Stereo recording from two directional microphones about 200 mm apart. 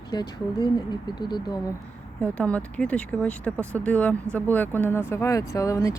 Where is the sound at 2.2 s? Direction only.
5° left (ahead or behind).